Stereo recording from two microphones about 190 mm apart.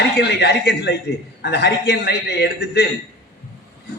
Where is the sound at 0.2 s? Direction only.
60° left (ahead or behind).